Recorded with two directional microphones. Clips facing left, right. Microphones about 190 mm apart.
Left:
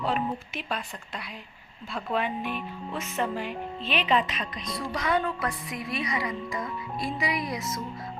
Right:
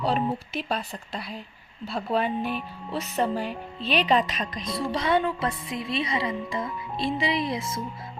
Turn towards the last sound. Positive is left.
turn(degrees=-30)  # may be behind; listen again after turning